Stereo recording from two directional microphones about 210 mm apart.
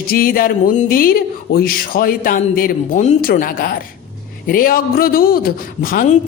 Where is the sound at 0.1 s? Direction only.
45° left (ahead or behind).